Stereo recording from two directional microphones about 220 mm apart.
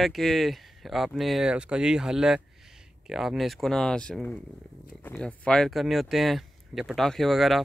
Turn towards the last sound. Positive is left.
turn(degrees=0)  # may be behind; listen again after turning